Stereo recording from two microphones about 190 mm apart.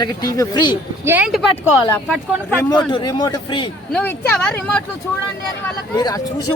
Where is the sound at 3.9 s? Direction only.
10° left (ahead or behind).